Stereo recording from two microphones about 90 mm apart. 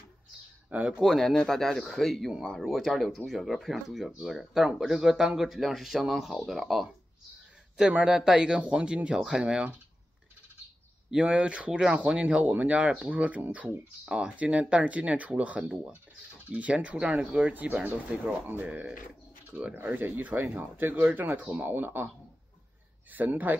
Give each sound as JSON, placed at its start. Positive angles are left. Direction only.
{"t": 0.7, "sound": "speech", "side_deg": -15}
{"t": 1.0, "sound": "speech", "side_deg": 0}
{"t": 11.1, "sound": "speech", "side_deg": -10}
{"t": 23.1, "sound": "speech", "side_deg": -20}